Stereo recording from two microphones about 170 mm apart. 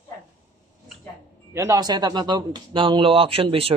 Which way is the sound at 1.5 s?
20° right (ahead or behind).